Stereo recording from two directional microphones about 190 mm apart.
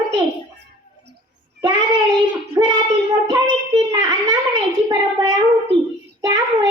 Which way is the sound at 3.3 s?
20° right (ahead or behind).